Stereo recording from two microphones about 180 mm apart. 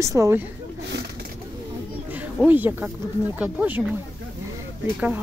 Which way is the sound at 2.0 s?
10° right (ahead or behind).